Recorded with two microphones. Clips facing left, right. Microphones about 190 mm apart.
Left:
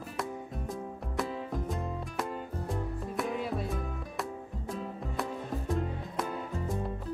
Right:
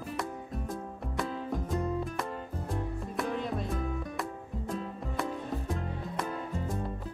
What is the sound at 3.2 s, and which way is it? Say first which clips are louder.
Music: even; 5° left (ahead or behind).